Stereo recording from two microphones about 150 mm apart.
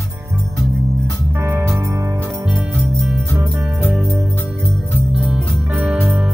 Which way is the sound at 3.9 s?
Centre (ahead or behind).